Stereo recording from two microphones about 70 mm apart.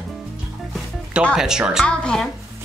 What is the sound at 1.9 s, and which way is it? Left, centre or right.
Speech, centre.